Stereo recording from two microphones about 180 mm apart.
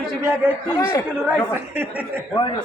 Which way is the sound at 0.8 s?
15° left (ahead or behind).